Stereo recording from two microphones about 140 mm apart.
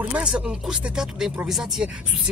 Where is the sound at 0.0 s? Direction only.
10° right (ahead or behind).